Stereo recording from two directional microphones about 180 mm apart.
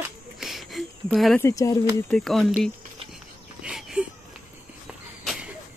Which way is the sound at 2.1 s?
Centre (ahead or behind).